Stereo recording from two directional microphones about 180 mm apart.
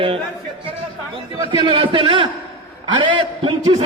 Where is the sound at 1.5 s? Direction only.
30° right (ahead or behind).